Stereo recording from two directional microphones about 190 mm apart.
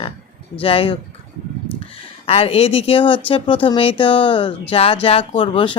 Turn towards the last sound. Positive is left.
turn(degrees=30)  # may be behind; listen again after turning